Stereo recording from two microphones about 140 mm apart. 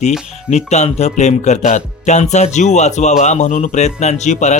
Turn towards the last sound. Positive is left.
turn(degrees=55)  # may be behind; listen again after turning